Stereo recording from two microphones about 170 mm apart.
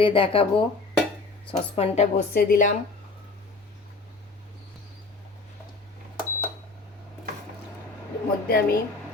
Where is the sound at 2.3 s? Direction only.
55° left (ahead or behind).